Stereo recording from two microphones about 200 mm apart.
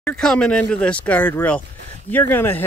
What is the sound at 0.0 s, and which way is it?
Speech, 5° left (ahead or behind).